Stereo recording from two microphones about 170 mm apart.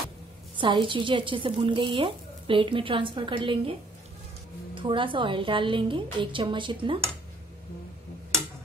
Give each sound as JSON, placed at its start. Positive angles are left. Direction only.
{"t": 0.6, "sound": "speech", "side_deg": -30}
{"t": 4.7, "sound": "speech", "side_deg": -30}